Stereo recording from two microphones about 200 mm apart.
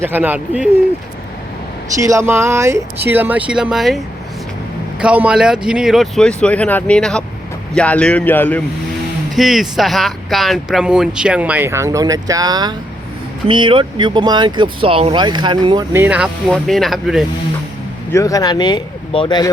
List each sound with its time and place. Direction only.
0.0 s speech: 10° right (ahead or behind)
2.0 s a man's voice: 15° right (ahead or behind)
18.1 s speech: 15° left (ahead or behind)